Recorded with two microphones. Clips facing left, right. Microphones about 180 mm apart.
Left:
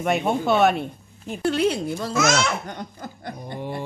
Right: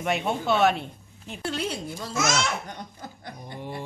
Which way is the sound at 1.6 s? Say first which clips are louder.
Left 9 dB; 70° left (ahead or behind).